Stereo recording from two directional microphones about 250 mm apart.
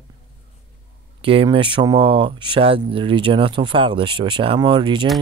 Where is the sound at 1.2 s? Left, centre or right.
Right.